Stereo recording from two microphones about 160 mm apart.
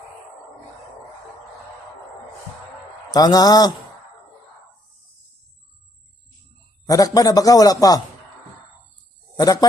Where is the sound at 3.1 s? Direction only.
25° left (ahead or behind).